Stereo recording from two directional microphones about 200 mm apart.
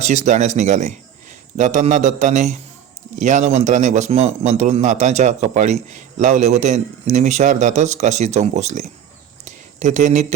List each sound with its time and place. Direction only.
0.0 s a man's voice: 35° right (ahead or behind)